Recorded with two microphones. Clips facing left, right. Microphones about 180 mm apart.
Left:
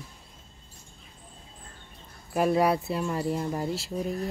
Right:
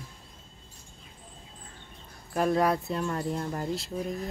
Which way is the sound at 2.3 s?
10° left (ahead or behind).